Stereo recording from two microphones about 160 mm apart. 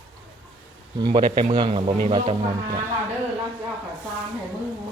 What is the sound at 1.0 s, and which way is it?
A man's voice, 30° right (ahead or behind).